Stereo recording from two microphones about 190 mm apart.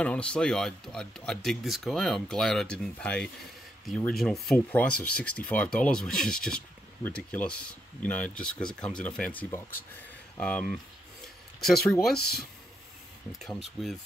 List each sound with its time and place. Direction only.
0.0 s speech: 5° left (ahead or behind)
12.1 s speech: 55° left (ahead or behind)
13.3 s speech: centre (ahead or behind)